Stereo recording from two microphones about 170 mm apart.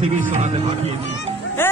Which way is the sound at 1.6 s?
15° left (ahead or behind).